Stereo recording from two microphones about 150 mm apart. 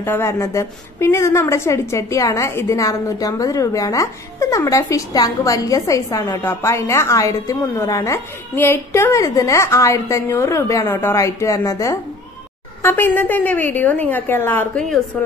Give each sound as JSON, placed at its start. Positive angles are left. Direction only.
{"t": 0.0, "sound": "a woman's voice", "side_deg": 15}